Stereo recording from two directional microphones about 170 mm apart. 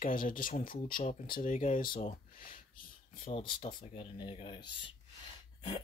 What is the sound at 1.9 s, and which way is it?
Speech, 35° left (ahead or behind).